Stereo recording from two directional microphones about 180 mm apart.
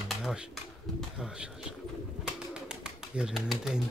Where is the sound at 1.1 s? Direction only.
5° right (ahead or behind).